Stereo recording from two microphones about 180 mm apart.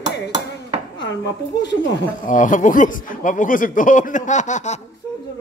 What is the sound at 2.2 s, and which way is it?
Speech, 45° left (ahead or behind).